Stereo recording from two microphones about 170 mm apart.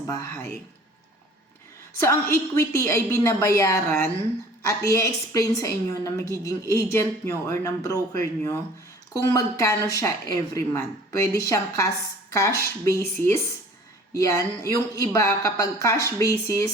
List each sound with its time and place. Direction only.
0.1 s a woman's voice: 20° left (ahead or behind)
2.0 s a woman's voice: 15° left (ahead or behind)